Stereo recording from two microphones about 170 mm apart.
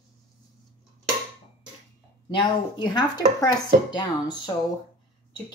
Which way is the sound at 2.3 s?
25° left (ahead or behind).